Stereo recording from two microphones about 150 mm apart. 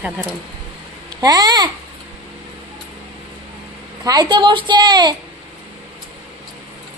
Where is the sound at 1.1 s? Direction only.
25° right (ahead or behind).